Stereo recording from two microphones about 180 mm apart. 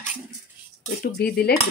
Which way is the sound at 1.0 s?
55° left (ahead or behind).